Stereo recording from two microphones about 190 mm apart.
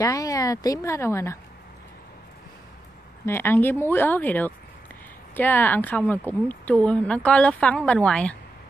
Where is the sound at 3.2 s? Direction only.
10° left (ahead or behind).